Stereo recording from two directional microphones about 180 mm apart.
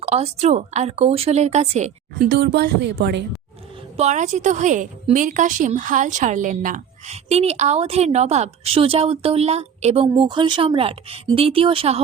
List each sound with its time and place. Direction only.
0.0 s a woman's voice: 35° right (ahead or behind)
2.1 s speech: 65° right (ahead or behind)
3.9 s a woman's voice: 40° right (ahead or behind)